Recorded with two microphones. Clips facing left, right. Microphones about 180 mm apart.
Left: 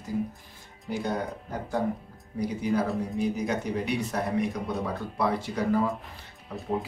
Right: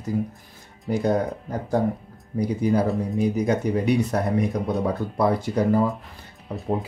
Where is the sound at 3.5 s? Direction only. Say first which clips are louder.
Right 7 dB; 45° right (ahead or behind).